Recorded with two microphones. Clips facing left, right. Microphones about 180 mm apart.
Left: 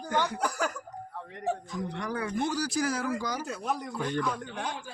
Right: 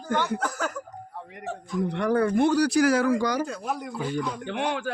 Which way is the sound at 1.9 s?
60° right (ahead or behind).